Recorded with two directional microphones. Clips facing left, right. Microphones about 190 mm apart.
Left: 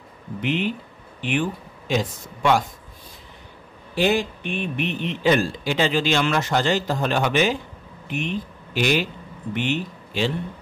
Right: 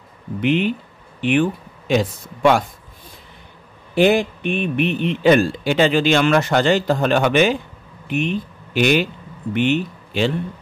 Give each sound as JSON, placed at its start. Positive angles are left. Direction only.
{"t": 0.4, "sound": "a man's voice", "side_deg": -60}
{"t": 3.9, "sound": "a man's voice", "side_deg": -60}
{"t": 8.7, "sound": "a man's voice", "side_deg": -60}